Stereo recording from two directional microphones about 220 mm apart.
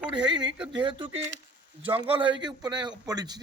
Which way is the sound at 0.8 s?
20° right (ahead or behind).